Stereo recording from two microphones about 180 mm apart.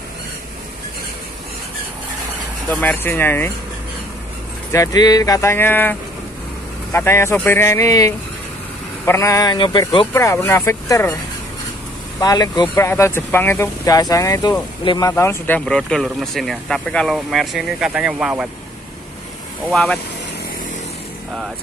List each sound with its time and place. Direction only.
2.7 s speech: 10° left (ahead or behind)
4.7 s speech: 20° left (ahead or behind)
12.2 s speech: 20° left (ahead or behind); by 18.5 s 5° right (ahead or behind)
19.7 s speech: 5° left (ahead or behind)